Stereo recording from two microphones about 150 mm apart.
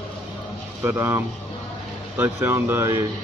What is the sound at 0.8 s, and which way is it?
Speech, 15° right (ahead or behind).